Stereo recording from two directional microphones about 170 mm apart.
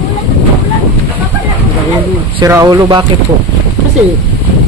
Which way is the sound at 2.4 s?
20° right (ahead or behind).